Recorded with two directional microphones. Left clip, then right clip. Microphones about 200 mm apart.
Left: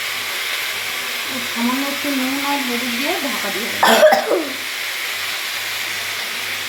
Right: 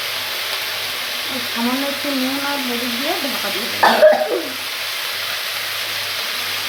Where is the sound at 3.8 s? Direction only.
45° left (ahead or behind).